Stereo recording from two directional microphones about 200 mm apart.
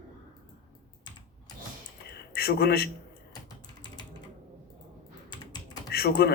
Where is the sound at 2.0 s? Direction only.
50° left (ahead or behind).